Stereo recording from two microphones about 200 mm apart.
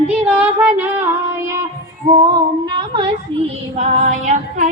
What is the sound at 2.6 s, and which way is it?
Female singing, 25° right (ahead or behind).